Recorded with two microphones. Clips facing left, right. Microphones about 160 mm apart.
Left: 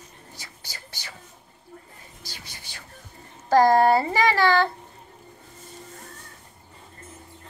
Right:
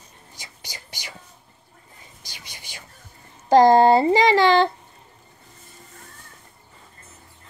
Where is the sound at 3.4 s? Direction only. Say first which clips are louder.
Right 4 dB; 20° right (ahead or behind).